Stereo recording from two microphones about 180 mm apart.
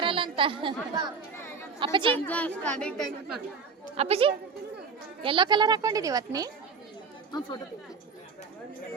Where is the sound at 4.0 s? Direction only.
35° right (ahead or behind).